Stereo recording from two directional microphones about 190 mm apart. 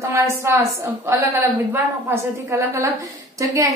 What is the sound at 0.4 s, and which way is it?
A woman's voice, 15° right (ahead or behind).